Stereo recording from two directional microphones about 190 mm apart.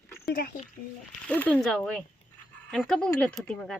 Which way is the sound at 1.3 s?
10° left (ahead or behind).